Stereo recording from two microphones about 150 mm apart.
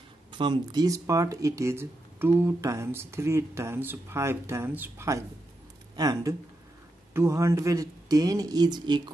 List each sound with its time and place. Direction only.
0.3 s speech: 30° right (ahead or behind)